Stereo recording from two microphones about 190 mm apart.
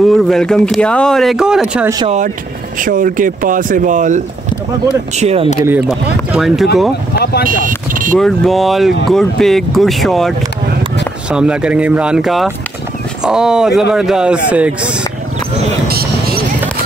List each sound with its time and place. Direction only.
0.0 s speech: centre (ahead or behind)
2.0 s speech: 40° right (ahead or behind)
5.7 s speech: 5° right (ahead or behind)
7.4 s speech: 45° right (ahead or behind)
8.2 s speech: centre (ahead or behind)
15.9 s music: 55° right (ahead or behind)